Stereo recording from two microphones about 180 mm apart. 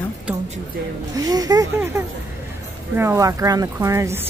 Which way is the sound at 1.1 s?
20° right (ahead or behind).